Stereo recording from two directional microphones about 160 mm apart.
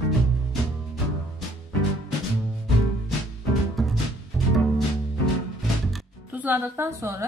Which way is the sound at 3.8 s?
Centre (ahead or behind).